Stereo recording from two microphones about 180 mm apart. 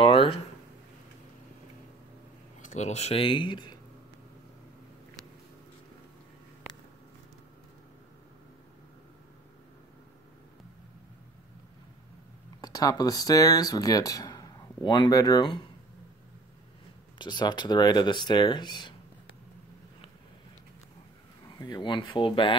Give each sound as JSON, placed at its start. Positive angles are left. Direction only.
{"t": 0.0, "sound": "a sound", "side_deg": 30}
{"t": 2.6, "sound": "speech", "side_deg": 40}
{"t": 12.6, "sound": "speech", "side_deg": 20}
{"t": 17.2, "sound": "speech", "side_deg": 25}
{"t": 21.5, "sound": "speech", "side_deg": 20}